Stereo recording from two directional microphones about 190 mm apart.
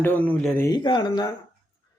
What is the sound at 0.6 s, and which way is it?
Speech, 25° left (ahead or behind).